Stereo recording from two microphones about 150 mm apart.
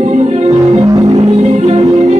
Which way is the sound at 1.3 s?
50° right (ahead or behind).